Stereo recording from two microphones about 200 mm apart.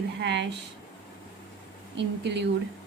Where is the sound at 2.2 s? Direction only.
60° right (ahead or behind).